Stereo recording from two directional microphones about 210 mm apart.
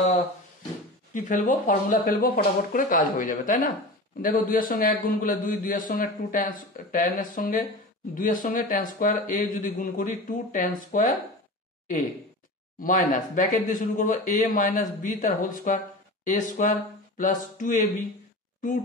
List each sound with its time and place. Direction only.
1.1 s a man's voice: 40° left (ahead or behind)
12.7 s a man's voice: 40° left (ahead or behind)